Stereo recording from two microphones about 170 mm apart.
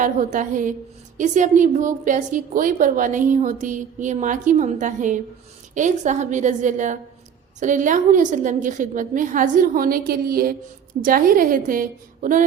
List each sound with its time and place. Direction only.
0.0 s a woman's voice: 50° right (ahead or behind)